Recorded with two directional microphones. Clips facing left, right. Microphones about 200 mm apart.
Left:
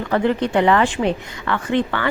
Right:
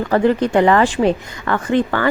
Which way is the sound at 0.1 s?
40° right (ahead or behind).